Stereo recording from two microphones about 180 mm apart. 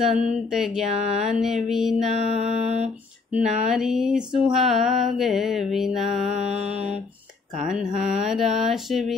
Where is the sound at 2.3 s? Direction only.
40° right (ahead or behind).